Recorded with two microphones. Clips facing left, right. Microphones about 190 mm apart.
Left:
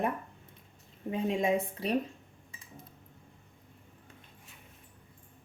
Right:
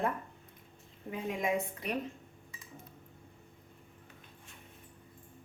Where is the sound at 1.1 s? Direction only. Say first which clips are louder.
Left 4 dB; 30° left (ahead or behind).